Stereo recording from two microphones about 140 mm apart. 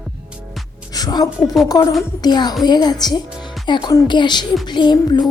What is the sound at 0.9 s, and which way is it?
Music, 30° left (ahead or behind).